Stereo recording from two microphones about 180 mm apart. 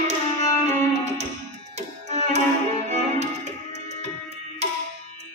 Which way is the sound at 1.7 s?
35° right (ahead or behind).